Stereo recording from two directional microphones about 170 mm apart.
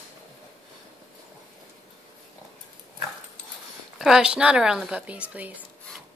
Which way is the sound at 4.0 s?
5° right (ahead or behind).